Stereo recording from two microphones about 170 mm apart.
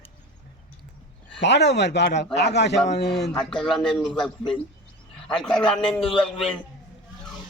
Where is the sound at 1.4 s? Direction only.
90° left.